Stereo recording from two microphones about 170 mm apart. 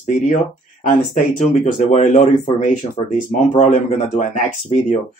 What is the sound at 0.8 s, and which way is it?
Speech, 45° left (ahead or behind).